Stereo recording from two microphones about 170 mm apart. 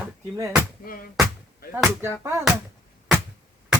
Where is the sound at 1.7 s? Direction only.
10° right (ahead or behind).